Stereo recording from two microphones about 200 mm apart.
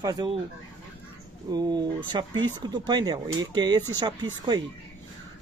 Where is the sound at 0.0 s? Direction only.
20° right (ahead or behind).